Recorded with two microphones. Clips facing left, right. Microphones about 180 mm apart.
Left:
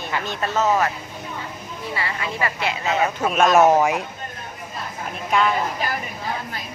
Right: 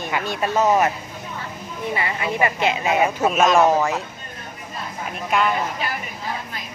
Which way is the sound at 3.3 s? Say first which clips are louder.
Left 3 dB; 5° left (ahead or behind).